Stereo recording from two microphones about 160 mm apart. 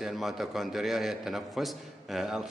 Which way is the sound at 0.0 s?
Centre (ahead or behind).